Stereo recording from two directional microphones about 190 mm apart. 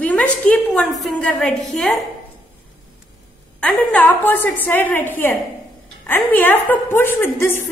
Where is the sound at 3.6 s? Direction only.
5° left (ahead or behind).